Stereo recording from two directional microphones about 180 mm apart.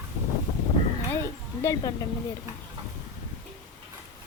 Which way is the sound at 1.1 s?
15° left (ahead or behind).